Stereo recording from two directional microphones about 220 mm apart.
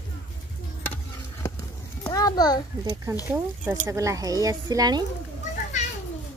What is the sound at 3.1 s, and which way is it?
Speech, 15° right (ahead or behind).